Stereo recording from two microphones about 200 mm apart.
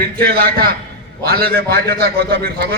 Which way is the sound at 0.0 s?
50° right (ahead or behind).